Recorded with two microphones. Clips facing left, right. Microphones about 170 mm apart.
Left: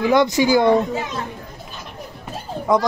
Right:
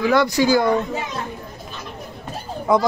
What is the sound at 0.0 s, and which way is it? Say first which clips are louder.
Speech: left 1 dB; 20° left (ahead or behind).